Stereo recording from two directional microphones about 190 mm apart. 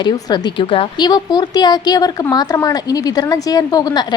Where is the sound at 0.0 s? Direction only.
20° left (ahead or behind).